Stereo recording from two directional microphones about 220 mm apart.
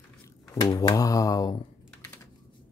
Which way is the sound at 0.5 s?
15° left (ahead or behind).